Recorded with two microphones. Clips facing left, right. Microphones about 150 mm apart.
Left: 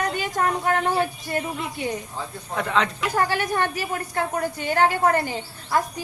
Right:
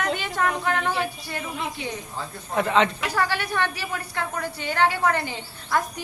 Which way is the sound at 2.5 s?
Centre (ahead or behind).